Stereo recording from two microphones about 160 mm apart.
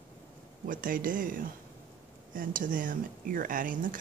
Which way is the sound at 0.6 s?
60° right (ahead or behind).